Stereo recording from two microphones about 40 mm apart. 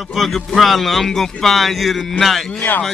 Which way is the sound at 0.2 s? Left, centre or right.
Centre.